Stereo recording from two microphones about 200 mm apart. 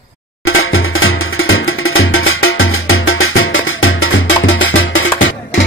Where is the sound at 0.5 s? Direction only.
90° left.